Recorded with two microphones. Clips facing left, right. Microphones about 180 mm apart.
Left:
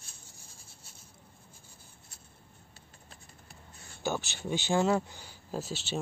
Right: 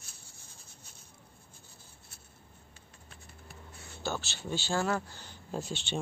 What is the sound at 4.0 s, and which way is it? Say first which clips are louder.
Speech: left 3 dB; 15° left (ahead or behind).